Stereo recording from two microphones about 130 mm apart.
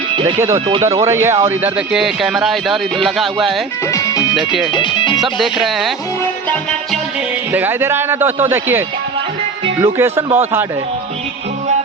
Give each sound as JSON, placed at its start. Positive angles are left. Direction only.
{"t": 0.3, "sound": "speech", "side_deg": -20}
{"t": 1.9, "sound": "speech", "side_deg": -5}
{"t": 3.9, "sound": "music", "side_deg": 30}
{"t": 4.4, "sound": "speech", "side_deg": 0}
{"t": 4.7, "sound": "speech", "side_deg": 35}
{"t": 5.1, "sound": "speech", "side_deg": 0}
{"t": 7.5, "sound": "a man's voice", "side_deg": -15}
{"t": 9.8, "sound": "speech", "side_deg": -20}